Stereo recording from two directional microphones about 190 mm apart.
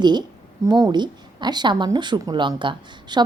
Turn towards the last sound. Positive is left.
turn(degrees=-25)  # may be behind; listen again after turning